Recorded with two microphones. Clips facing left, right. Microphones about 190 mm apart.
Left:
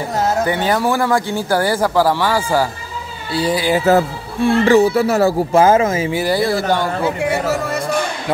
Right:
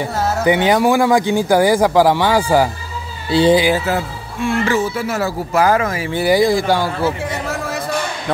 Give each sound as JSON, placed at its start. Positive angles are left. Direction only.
{"t": 0.5, "sound": "speech", "side_deg": -15}
{"t": 3.8, "sound": "speech", "side_deg": 35}
{"t": 6.2, "sound": "speech", "side_deg": -15}
{"t": 7.2, "sound": "speech", "side_deg": 0}